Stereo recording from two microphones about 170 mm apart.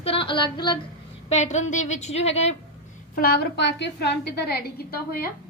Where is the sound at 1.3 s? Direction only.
45° left (ahead or behind).